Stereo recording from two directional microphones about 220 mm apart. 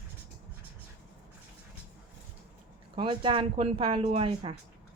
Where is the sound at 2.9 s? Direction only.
25° right (ahead or behind).